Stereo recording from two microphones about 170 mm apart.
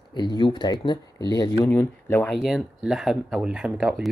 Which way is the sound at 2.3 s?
5° right (ahead or behind).